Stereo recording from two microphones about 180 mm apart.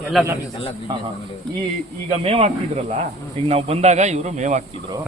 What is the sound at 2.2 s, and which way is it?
Speech, 30° right (ahead or behind).